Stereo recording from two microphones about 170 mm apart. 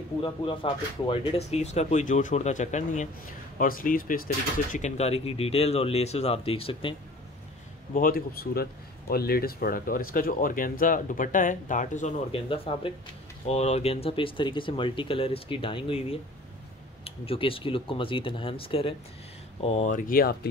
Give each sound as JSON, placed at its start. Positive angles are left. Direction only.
{"t": 0.2, "sound": "speech", "side_deg": 30}
{"t": 4.7, "sound": "speech", "side_deg": 40}
{"t": 7.9, "sound": "speech", "side_deg": 55}
{"t": 12.3, "sound": "speech", "side_deg": 35}